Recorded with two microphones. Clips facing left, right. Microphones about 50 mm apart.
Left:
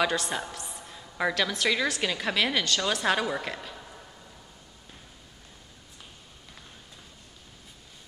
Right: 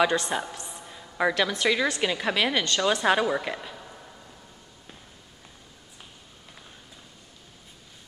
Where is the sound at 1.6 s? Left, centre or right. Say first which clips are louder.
Right 2 dB; centre.